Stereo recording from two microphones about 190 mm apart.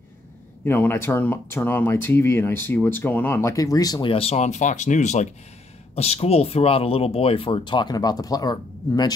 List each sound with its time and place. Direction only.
0.7 s speech: 10° left (ahead or behind)